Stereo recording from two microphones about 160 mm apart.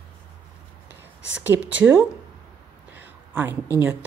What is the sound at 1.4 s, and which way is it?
A woman's voice, 10° right (ahead or behind).